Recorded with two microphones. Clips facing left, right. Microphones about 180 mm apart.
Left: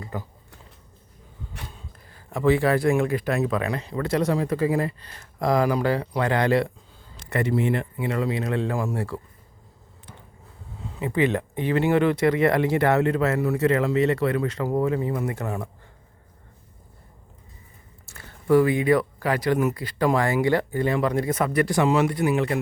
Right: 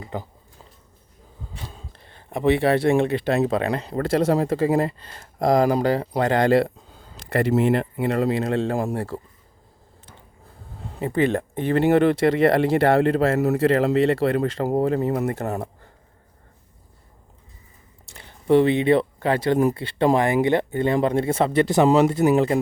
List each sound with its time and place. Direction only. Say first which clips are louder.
0.0 s speech: right 2 dB; 20° right (ahead or behind)
1.6 s speech: right 2 dB; 30° right (ahead or behind)
8.0 s speech: right 4 dB; 40° right (ahead or behind)
10.8 s speech: right 2 dB; 55° right (ahead or behind)
12.1 s speech: right 2 dB; 30° right (ahead or behind)
14.8 s speech: right 3 dB; 45° right (ahead or behind)
15.4 s speech: right 3 dB; 40° right (ahead or behind)
18.1 s speech: right 2 dB; 20° right (ahead or behind)